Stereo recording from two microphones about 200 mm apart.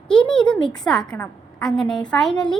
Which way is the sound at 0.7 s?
Centre (ahead or behind).